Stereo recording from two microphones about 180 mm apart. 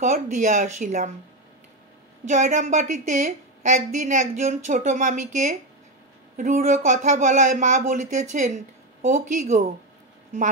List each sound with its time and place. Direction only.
0.0 s a woman's voice: 40° right (ahead or behind)
2.2 s a woman's voice: 45° right (ahead or behind)